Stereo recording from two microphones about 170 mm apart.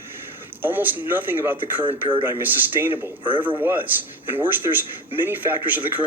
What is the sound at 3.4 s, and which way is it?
Speech, 10° right (ahead or behind).